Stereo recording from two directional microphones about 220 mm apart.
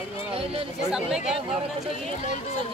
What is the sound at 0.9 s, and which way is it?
Speech, 5° right (ahead or behind).